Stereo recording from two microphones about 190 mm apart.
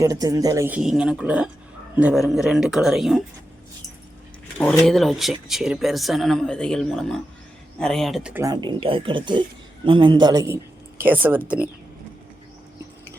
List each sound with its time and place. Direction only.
0.0 s speech: 20° right (ahead or behind); by 3.2 s centre (ahead or behind)
4.5 s speech: 5° left (ahead or behind); by 8.5 s 10° right (ahead or behind)
8.6 s speech: 25° right (ahead or behind); by 11.7 s 10° right (ahead or behind)